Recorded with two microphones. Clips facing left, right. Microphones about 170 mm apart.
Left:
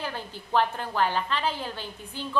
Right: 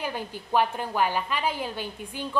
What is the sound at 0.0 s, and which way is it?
A woman's voice, 15° right (ahead or behind).